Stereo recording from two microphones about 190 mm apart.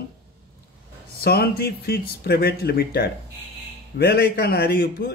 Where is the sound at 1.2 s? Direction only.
55° left (ahead or behind).